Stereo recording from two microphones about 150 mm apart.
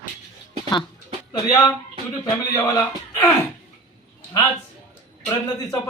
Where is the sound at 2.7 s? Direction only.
20° left (ahead or behind).